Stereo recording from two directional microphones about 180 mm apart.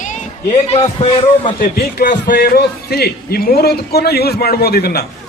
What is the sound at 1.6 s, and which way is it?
A man's voice, 60° left (ahead or behind).